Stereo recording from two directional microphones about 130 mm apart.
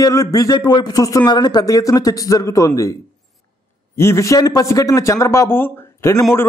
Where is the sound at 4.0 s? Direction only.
20° left (ahead or behind).